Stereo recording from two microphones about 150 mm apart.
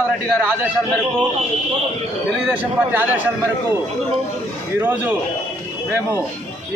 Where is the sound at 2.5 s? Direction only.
10° right (ahead or behind).